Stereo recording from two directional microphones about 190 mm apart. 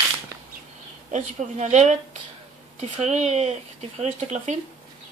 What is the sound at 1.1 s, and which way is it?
Speech, 35° right (ahead or behind).